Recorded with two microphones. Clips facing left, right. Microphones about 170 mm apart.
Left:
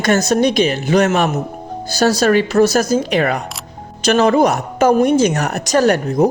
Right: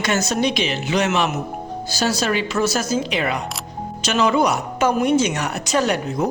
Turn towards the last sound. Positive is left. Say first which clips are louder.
# left 7 dB
turn(degrees=40)  # may be behind; listen again after turning